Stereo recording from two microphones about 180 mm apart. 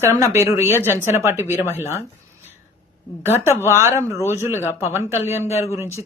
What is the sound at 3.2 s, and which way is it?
Speech, 15° right (ahead or behind).